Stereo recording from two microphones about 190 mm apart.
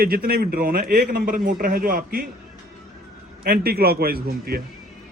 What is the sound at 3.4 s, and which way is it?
A man's voice, 55° right (ahead or behind).